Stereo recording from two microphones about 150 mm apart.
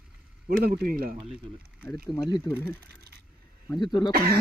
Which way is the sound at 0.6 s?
90° right.